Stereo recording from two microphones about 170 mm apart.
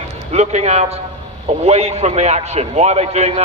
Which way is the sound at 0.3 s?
40° right (ahead or behind).